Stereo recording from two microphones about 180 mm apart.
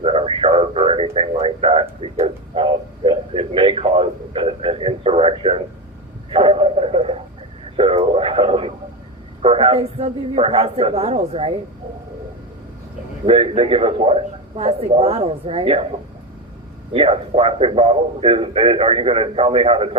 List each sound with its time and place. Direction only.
0.0 s radio: 30° right (ahead or behind)
9.4 s a man's voice: 30° right (ahead or behind)
13.2 s a man's voice: 30° right (ahead or behind)
16.9 s a man's voice: 30° right (ahead or behind)